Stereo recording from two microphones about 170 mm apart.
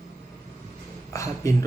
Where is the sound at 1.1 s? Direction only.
20° left (ahead or behind).